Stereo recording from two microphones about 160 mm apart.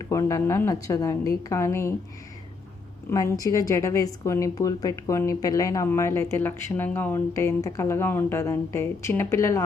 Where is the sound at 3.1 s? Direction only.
20° left (ahead or behind).